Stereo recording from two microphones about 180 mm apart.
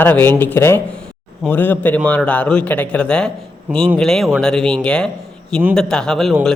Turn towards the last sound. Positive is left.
turn(degrees=0)  # may be behind; listen again after turning